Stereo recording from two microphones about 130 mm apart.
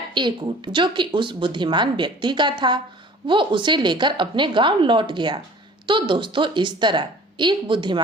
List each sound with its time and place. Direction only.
0.1 s speech: 35° right (ahead or behind)